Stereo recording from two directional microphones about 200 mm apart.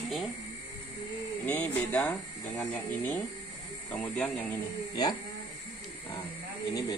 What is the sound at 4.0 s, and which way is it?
Speech, 5° left (ahead or behind).